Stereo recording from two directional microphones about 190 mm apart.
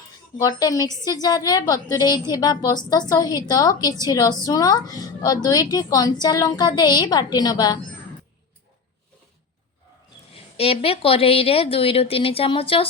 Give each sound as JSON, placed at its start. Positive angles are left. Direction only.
{"t": 0.3, "sound": "a woman's voice", "side_deg": 20}
{"t": 10.3, "sound": "speech", "side_deg": 30}